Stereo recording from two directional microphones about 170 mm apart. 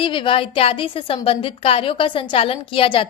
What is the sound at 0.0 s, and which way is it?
A woman's voice, 30° left (ahead or behind).